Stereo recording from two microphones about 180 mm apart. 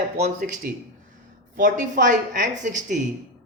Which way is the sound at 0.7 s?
55° right (ahead or behind).